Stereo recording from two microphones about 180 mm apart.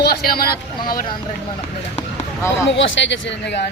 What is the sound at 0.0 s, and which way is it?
Speech, 60° left (ahead or behind).